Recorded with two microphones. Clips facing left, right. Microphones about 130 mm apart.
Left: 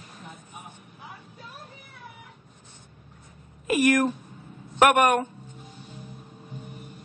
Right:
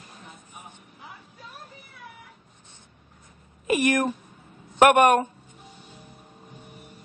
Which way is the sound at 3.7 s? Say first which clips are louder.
Left 2 dB; 25° right (ahead or behind).